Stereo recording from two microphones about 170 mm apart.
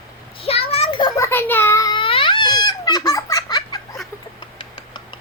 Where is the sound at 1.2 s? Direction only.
15° left (ahead or behind).